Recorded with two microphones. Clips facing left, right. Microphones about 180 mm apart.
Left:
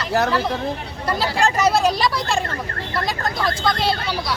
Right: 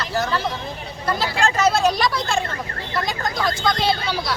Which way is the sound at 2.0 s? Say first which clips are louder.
Left 1 dB; 5° left (ahead or behind).